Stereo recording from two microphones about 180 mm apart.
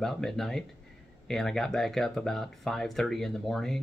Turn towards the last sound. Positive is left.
turn(degrees=0)  # may be behind; listen again after turning